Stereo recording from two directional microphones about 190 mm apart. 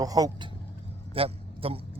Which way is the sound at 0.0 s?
20° right (ahead or behind).